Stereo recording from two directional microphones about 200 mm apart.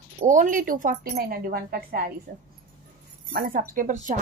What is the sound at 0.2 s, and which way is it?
Speech, 40° right (ahead or behind).